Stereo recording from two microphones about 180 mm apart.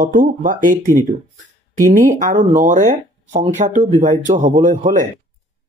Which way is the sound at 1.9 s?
45° right (ahead or behind).